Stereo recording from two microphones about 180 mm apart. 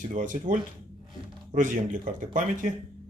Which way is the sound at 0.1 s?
45° right (ahead or behind).